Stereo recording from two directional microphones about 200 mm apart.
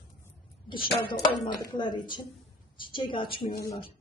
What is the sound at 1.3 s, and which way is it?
A woman's voice, 20° left (ahead or behind).